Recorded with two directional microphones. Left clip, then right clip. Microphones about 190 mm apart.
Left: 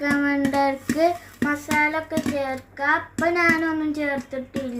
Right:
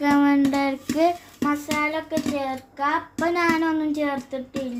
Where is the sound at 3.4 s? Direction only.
40° right (ahead or behind).